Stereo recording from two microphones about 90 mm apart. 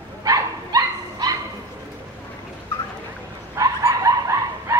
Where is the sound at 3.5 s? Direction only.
40° right (ahead or behind).